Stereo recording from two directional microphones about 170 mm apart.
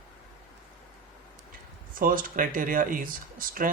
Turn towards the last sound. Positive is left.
turn(degrees=-55)  # may be behind; listen again after turning